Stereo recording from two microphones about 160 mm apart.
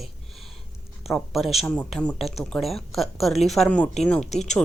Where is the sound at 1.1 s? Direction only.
Centre (ahead or behind).